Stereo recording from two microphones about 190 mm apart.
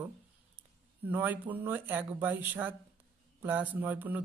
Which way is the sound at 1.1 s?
10° right (ahead or behind).